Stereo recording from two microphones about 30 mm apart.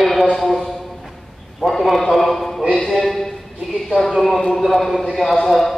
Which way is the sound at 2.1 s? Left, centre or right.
Centre.